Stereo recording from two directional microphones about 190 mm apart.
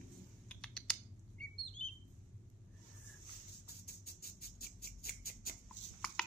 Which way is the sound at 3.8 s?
50° left (ahead or behind).